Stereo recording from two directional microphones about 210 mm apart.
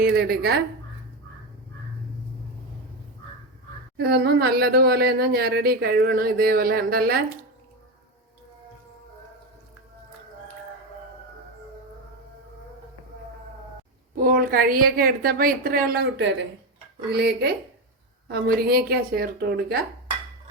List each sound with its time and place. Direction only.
0.0 s speech: 45° right (ahead or behind)
3.9 s speech: 50° right (ahead or behind)
14.2 s speech: 45° right (ahead or behind)
17.1 s speech: 50° right (ahead or behind)